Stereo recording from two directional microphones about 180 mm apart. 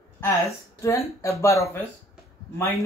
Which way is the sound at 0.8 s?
15° left (ahead or behind).